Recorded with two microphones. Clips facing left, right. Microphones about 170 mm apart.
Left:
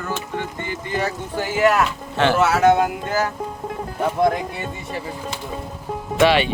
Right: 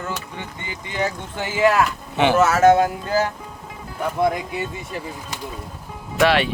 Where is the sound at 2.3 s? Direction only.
45° right (ahead or behind).